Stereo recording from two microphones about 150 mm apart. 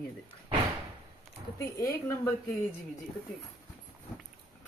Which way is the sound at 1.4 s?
35° right (ahead or behind).